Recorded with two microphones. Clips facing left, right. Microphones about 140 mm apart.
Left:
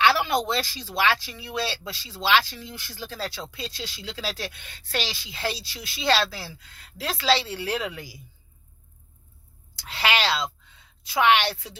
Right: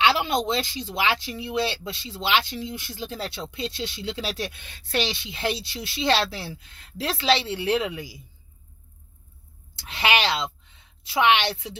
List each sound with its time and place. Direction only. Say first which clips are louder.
0.0 s speech: even; 20° right (ahead or behind)
9.8 s a woman's voice: right 2 dB; 20° right (ahead or behind)